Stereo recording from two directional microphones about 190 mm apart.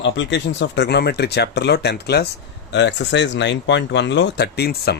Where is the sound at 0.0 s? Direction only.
70° left (ahead or behind).